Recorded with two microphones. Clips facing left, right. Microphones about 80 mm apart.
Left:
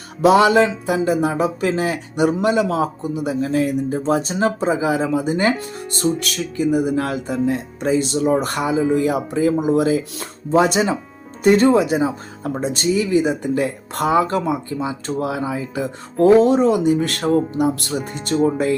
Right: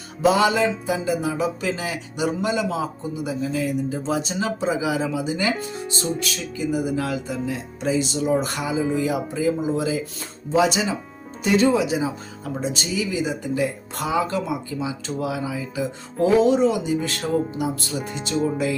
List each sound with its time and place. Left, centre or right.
0.2 s speech: left
6.1 s speech: left